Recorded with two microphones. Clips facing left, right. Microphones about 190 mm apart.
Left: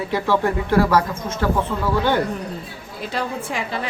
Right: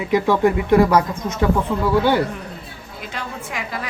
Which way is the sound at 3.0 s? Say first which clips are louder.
Left 5 dB; 30° left (ahead or behind).